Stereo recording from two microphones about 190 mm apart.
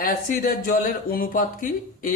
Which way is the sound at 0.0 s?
45° left (ahead or behind).